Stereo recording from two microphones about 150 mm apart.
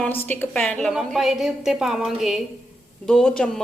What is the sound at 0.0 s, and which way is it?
A woman's voice, 15° left (ahead or behind).